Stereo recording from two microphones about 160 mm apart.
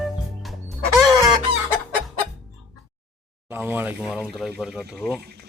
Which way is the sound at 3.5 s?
15° right (ahead or behind).